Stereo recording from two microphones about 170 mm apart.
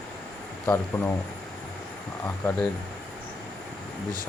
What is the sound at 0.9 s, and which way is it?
Speech, 20° left (ahead or behind).